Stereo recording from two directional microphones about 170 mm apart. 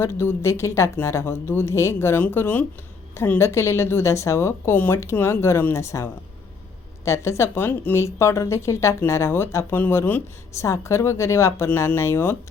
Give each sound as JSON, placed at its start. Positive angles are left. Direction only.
{"t": 0.0, "sound": "speech", "side_deg": 15}